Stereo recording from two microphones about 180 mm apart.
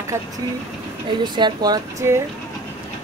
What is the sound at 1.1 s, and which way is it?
Speech, 25° right (ahead or behind).